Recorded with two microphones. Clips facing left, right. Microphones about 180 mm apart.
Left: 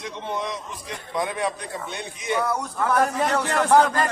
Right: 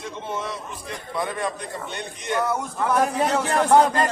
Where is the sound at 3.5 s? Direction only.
30° right (ahead or behind).